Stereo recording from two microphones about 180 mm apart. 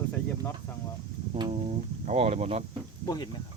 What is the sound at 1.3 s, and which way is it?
Speech, 35° right (ahead or behind).